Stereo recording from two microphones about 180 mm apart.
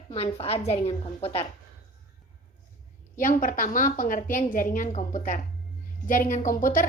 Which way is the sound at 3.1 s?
50° left (ahead or behind).